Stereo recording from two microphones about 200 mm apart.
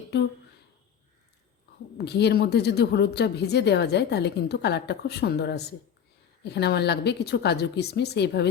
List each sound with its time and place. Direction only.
0.1 s a woman's voice: 55° left (ahead or behind)
2.0 s a woman's voice: 55° left (ahead or behind)